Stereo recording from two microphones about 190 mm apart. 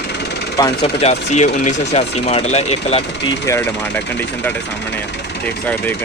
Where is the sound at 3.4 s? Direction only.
15° left (ahead or behind).